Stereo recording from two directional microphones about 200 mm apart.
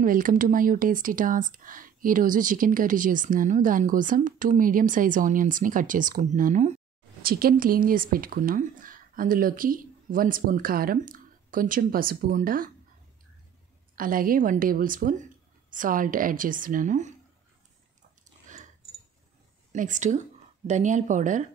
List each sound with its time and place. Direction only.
0.0 s speech: 45° right (ahead or behind)
7.2 s speech: 45° right (ahead or behind)
13.9 s speech: 45° right (ahead or behind)
19.7 s speech: 40° right (ahead or behind)